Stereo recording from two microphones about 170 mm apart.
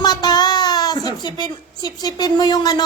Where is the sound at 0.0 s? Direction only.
25° left (ahead or behind).